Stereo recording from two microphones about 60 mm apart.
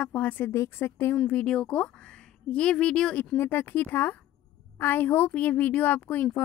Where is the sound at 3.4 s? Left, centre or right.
Left.